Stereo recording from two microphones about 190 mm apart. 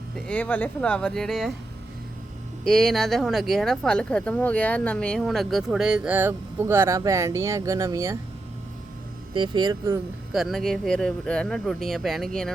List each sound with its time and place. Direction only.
0.3 s speech: 5° left (ahead or behind)
2.6 s speech: 5° left (ahead or behind); by 8.2 s 15° right (ahead or behind)
9.3 s speech: 25° right (ahead or behind)
10.3 s speech: centre (ahead or behind)